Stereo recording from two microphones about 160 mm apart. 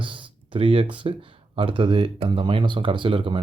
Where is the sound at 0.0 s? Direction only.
30° right (ahead or behind).